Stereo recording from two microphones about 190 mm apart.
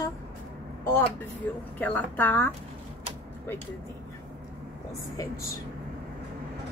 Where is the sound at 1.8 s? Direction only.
10° left (ahead or behind).